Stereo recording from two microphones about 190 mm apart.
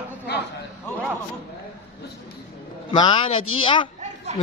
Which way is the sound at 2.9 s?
25° left (ahead or behind).